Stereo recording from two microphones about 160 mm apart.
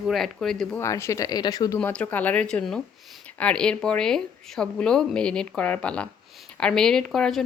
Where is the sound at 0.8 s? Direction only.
15° left (ahead or behind).